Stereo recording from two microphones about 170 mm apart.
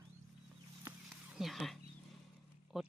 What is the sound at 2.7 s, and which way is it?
Speech, centre (ahead or behind).